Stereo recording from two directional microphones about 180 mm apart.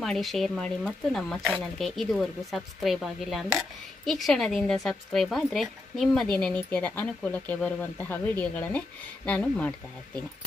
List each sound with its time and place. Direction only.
0.0 s speech: centre (ahead or behind)